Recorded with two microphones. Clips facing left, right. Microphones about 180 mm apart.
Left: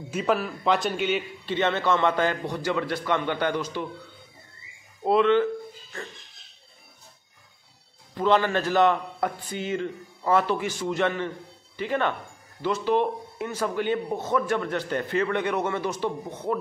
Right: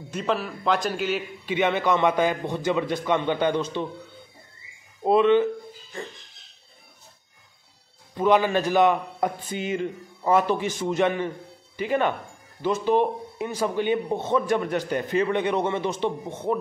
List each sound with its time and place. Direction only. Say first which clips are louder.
0.1 s a man's voice: left 1 dB; 5° left (ahead or behind); by 3.9 s 25° right (ahead or behind)
5.0 s a man's voice: right 2 dB; 20° right (ahead or behind)
8.1 s a man's voice: right 2 dB; 15° right (ahead or behind)